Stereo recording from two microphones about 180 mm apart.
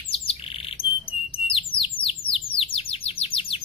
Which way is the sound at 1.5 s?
30° left (ahead or behind).